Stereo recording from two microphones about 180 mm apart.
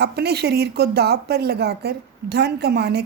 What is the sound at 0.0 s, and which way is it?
A woman's voice, 65° right (ahead or behind).